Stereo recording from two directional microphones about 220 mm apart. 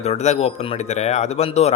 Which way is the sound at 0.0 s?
30° left (ahead or behind).